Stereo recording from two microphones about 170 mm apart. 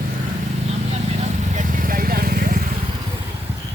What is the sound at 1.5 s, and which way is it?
Vehicle, 55° right (ahead or behind).